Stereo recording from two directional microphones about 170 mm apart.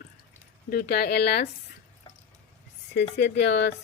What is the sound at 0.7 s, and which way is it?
Speech, 70° left (ahead or behind).